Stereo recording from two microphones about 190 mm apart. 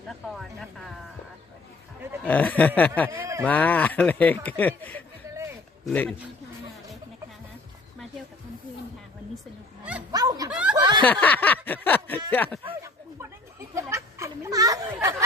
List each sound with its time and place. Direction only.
0.1 s speech: centre (ahead or behind)
2.2 s speech: 10° left (ahead or behind)
3.2 s speech: 15° right (ahead or behind)
3.4 s speech: 10° left (ahead or behind)
10.1 s snicker: 20° right (ahead or behind)
10.5 s snicker: 5° right (ahead or behind)
10.8 s snicker: 20° right (ahead or behind)
11.0 s speech: 10° left (ahead or behind)
12.8 s a sound: 15° right (ahead or behind)